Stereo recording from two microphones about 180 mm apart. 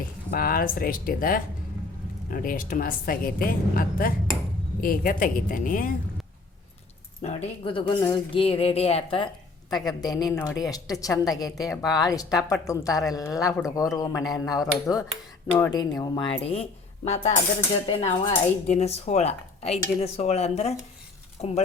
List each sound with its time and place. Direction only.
0.3 s a woman's voice: 55° left (ahead or behind)
7.2 s a man's voice: 40° left (ahead or behind)
17.8 s speech: 35° left (ahead or behind)